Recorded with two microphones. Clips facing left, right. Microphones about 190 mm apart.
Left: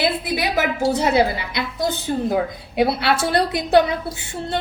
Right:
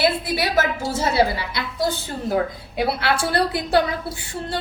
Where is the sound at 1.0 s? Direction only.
20° left (ahead or behind).